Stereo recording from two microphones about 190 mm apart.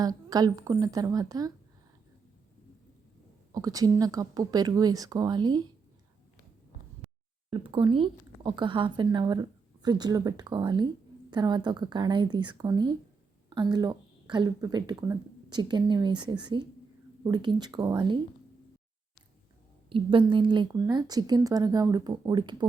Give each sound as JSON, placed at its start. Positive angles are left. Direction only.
{"t": 0.3, "sound": "a woman's voice", "side_deg": -20}
{"t": 3.5, "sound": "a woman's voice", "side_deg": -20}
{"t": 7.5, "sound": "a woman's voice", "side_deg": -25}
{"t": 19.9, "sound": "a woman's voice", "side_deg": -25}